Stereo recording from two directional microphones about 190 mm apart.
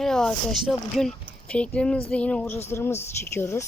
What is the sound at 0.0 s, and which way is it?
Speech, 5° left (ahead or behind).